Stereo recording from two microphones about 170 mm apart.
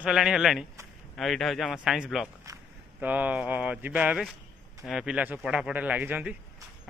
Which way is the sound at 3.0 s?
10° right (ahead or behind).